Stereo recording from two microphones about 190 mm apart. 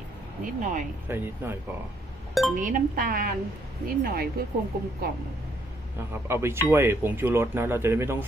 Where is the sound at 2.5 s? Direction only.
45° right (ahead or behind).